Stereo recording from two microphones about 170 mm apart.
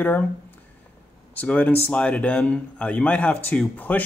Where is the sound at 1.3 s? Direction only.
10° left (ahead or behind).